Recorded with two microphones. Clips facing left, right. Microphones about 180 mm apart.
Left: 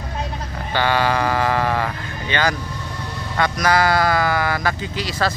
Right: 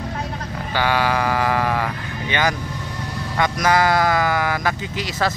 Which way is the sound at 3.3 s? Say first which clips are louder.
Even; 20° right (ahead or behind).